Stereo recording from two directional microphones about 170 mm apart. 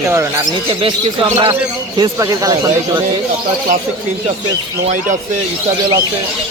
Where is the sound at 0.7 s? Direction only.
30° right (ahead or behind).